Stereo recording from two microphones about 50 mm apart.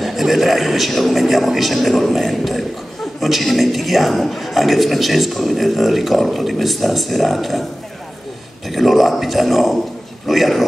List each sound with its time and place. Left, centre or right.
0.0 s a man's voice: centre
8.6 s a man's voice: centre